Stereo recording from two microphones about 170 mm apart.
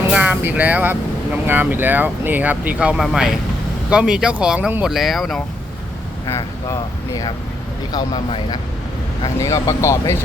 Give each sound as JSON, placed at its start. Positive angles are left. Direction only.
{"t": 0.1, "sound": "speech", "side_deg": -10}
{"t": 6.2, "sound": "speech", "side_deg": 20}